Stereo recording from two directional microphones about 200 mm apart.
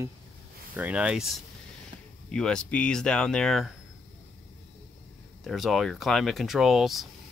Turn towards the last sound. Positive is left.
turn(degrees=0)  # may be behind; listen again after turning